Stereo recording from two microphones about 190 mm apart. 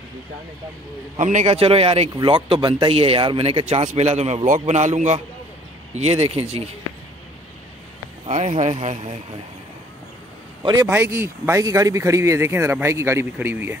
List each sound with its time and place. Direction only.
1.1 s a man's voice: 40° right (ahead or behind)
8.3 s a man's voice: 40° right (ahead or behind)
10.6 s a man's voice: 20° right (ahead or behind)
10.9 s speech: 10° right (ahead or behind)